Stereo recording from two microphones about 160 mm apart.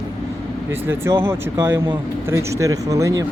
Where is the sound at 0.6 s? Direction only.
15° right (ahead or behind).